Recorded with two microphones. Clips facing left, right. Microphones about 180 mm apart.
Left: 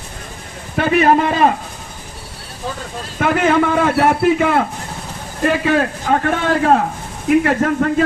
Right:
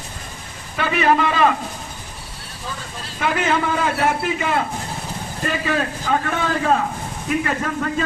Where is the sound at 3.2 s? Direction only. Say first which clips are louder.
Left 6 dB; 50° left (ahead or behind).